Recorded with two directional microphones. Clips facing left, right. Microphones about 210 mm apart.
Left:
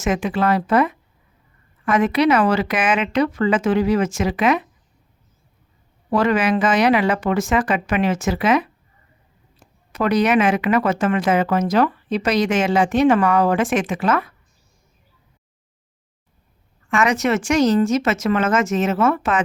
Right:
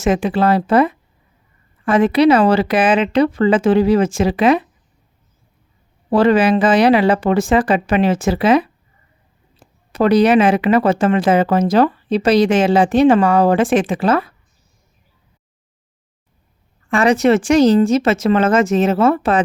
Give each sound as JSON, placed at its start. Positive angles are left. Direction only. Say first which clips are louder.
{"t": 0.0, "sound": "speech", "louder": "right 4 dB", "side_deg": -30}
{"t": 6.1, "sound": "speech", "louder": "right 5 dB", "side_deg": -30}
{"t": 16.9, "sound": "speech", "louder": "right 6 dB", "side_deg": -35}